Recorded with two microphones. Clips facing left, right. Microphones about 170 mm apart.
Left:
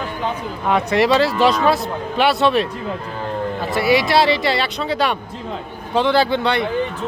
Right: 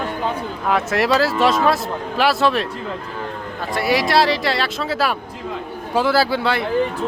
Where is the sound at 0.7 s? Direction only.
Centre (ahead or behind).